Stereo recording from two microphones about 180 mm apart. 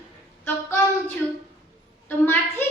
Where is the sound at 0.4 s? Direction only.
10° left (ahead or behind).